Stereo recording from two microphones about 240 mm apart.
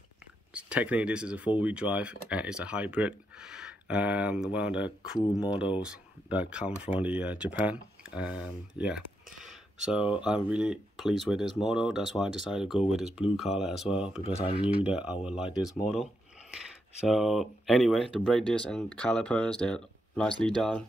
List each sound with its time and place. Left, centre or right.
0.5 s speech: centre
14.2 s speech: left
14.8 s speech: centre
17.1 s speech: centre